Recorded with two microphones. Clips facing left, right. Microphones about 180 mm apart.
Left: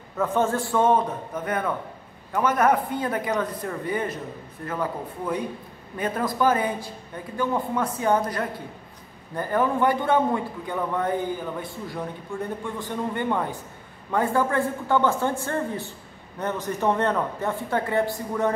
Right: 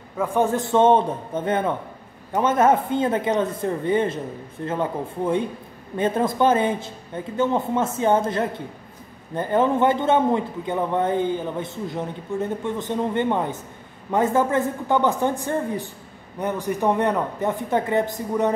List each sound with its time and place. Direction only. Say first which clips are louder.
0.2 s a man's voice: right 2 dB; 15° right (ahead or behind)